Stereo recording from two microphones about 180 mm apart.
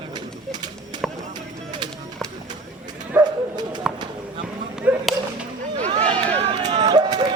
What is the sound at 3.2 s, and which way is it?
Bow-wow, 20° right (ahead or behind).